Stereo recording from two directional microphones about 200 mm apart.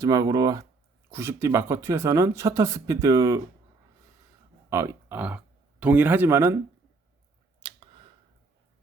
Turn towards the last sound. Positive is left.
turn(degrees=-25)  # may be behind; listen again after turning